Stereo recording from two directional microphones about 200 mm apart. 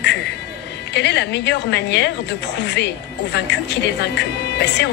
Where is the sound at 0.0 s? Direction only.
55° left (ahead or behind).